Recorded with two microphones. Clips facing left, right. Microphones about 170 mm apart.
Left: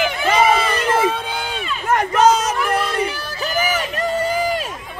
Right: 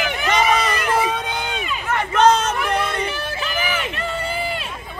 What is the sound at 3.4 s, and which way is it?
Run, 40° left (ahead or behind).